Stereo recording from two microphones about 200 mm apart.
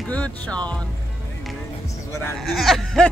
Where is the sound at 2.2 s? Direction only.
Centre (ahead or behind).